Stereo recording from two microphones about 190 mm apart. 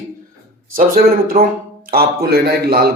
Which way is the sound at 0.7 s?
50° right (ahead or behind).